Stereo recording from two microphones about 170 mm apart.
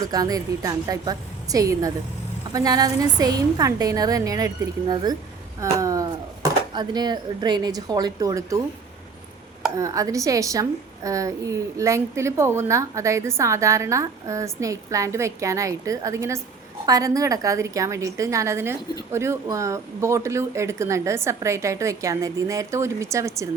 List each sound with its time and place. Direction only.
0.1 s a woman's voice: 20° right (ahead or behind)
9.7 s a woman's voice: 20° right (ahead or behind)